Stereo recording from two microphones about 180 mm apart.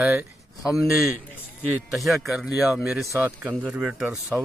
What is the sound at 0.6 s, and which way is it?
Speech, 20° left (ahead or behind).